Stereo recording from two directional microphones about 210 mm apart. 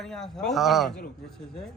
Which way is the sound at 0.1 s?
Centre (ahead or behind).